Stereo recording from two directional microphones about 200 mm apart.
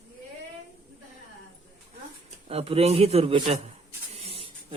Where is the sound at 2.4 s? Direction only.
30° right (ahead or behind).